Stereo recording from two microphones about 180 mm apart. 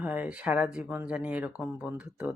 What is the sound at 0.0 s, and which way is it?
Speech, 10° right (ahead or behind).